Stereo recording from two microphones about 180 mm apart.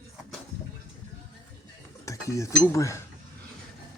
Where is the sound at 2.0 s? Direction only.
15° left (ahead or behind).